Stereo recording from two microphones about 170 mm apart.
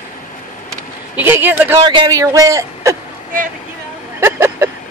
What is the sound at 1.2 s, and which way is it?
Speech, 10° right (ahead or behind).